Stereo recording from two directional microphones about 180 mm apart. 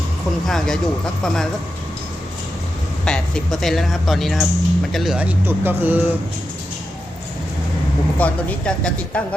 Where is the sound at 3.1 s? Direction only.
5° left (ahead or behind).